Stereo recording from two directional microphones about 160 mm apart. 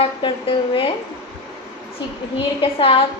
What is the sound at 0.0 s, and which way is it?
Speech, 30° left (ahead or behind).